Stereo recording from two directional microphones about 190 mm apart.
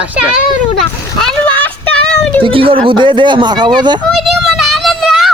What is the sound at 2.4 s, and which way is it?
Speech, 30° right (ahead or behind).